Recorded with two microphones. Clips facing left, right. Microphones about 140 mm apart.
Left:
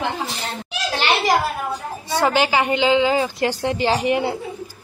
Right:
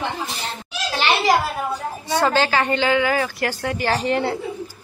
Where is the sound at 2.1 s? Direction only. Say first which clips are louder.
Left 1 dB; 15° left (ahead or behind).